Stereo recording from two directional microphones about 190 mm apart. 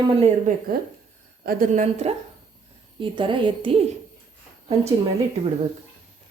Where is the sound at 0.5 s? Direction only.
40° right (ahead or behind).